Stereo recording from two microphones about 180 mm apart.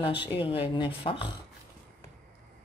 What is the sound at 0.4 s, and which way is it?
Speech, 30° left (ahead or behind).